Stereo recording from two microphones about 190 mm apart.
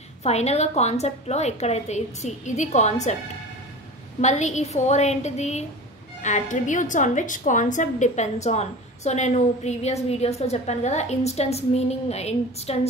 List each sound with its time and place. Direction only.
0.2 s a woman's voice: 35° left (ahead or behind)
4.2 s a woman's voice: 35° left (ahead or behind)